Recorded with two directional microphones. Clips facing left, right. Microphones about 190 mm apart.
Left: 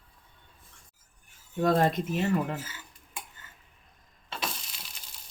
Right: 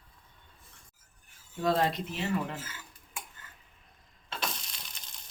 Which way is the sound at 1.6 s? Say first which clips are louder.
Left 4 dB; 50° left (ahead or behind).